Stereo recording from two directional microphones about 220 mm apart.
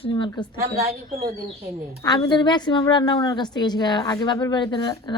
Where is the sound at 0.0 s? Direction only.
20° left (ahead or behind).